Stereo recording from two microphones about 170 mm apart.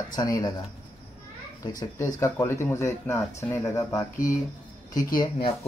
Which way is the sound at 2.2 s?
20° left (ahead or behind).